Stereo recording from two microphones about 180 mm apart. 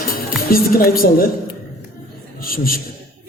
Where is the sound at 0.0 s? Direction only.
55° left (ahead or behind).